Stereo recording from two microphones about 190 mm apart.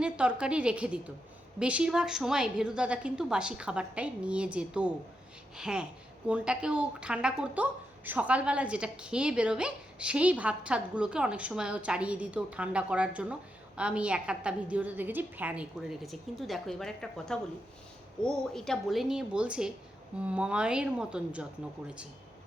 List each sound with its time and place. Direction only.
0.0 s speech: 5° right (ahead or behind)